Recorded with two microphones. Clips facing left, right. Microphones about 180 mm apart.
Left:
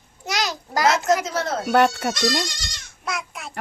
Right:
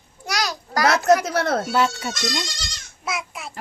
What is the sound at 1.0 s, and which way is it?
Speech, 65° right (ahead or behind).